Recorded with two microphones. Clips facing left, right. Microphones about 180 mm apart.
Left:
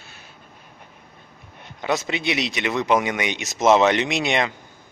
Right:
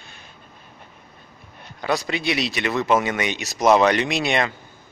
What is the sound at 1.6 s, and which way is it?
Speech, 20° left (ahead or behind).